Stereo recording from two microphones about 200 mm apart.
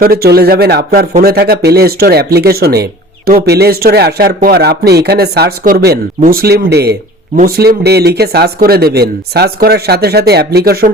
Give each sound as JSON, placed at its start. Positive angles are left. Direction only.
{"t": 0.0, "sound": "speech", "side_deg": -50}